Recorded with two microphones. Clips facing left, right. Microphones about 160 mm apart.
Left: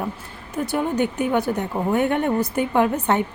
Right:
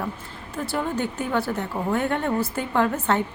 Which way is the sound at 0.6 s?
20° left (ahead or behind).